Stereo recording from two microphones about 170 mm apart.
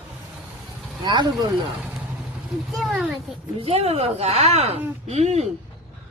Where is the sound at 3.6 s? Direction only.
35° right (ahead or behind).